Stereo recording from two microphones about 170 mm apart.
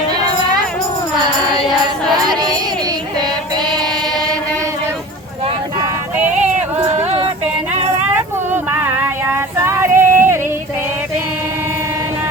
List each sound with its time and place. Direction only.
2.1 s music: 25° right (ahead or behind)
8.5 s female singing: 15° right (ahead or behind)